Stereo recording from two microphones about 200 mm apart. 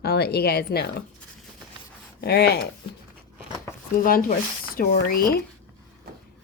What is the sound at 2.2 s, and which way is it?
Speech, 55° left (ahead or behind).